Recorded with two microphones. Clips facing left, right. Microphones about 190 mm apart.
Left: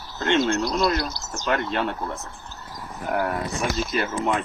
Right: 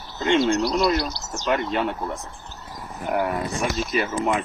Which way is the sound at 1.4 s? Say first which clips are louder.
Right 1 dB; 5° right (ahead or behind).